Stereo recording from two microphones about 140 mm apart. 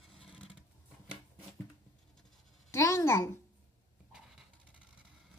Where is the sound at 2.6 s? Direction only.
20° left (ahead or behind).